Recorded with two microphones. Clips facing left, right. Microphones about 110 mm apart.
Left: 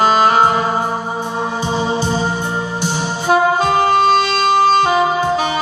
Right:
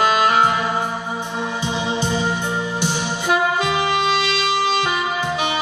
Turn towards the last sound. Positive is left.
turn(degrees=35)  # may be behind; listen again after turning